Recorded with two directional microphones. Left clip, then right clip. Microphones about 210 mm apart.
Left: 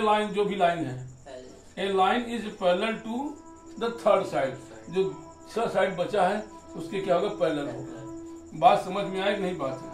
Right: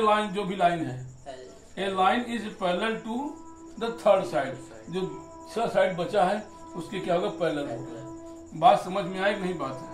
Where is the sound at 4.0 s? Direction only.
Centre (ahead or behind).